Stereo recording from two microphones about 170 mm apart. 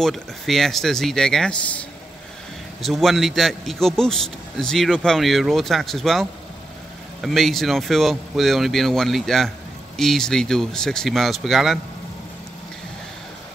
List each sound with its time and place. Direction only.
0.0 s a man's voice: centre (ahead or behind)